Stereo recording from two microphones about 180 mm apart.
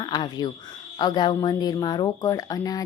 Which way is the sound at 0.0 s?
25° left (ahead or behind).